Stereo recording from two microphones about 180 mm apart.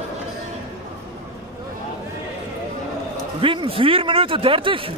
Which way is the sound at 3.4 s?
30° right (ahead or behind).